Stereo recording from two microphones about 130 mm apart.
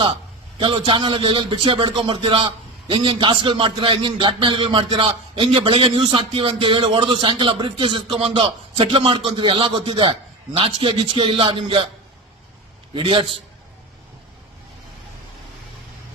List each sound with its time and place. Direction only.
0.6 s a man's voice: 40° right (ahead or behind)
12.9 s a man's voice: 40° right (ahead or behind)